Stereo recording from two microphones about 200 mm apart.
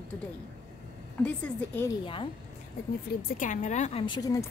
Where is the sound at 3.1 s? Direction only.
50° left (ahead or behind); by 4.4 s 20° left (ahead or behind).